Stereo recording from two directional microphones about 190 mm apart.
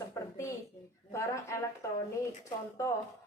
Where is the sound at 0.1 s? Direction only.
15° left (ahead or behind).